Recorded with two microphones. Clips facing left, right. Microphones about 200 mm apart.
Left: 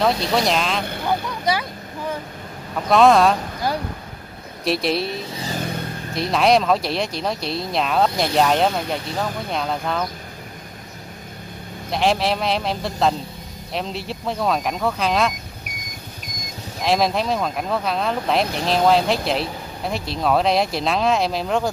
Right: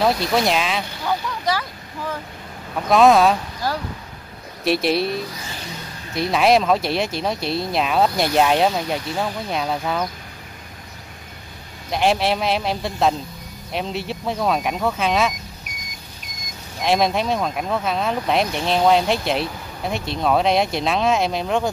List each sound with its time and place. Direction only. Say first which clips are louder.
0.0 s speech: right 1 dB; 5° right (ahead or behind)
1.0 s a sound: left 1 dB; 15° left (ahead or behind)
2.9 s speech: even; centre (ahead or behind)
4.6 s speech: right 2 dB; centre (ahead or behind)
5.3 s vehicle: left 6 dB; 35° left (ahead or behind)
5.6 s vehicle: left 7 dB; 55° left (ahead or behind)
6.1 s speech: right 1 dB; centre (ahead or behind)
11.9 s speech: right 1 dB; centre (ahead or behind)
16.8 s speech: right 1 dB; centre (ahead or behind)